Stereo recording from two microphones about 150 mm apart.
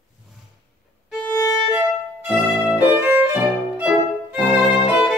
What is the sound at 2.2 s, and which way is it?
Music, 10° right (ahead or behind).